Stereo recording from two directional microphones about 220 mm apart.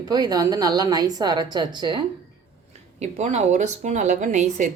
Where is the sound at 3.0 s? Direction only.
30° right (ahead or behind).